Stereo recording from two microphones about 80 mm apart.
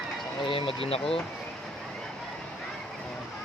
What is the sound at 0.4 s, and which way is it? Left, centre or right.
Speech, left.